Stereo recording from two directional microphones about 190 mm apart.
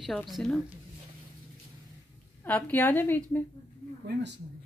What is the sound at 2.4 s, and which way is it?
A woman's voice, 10° left (ahead or behind).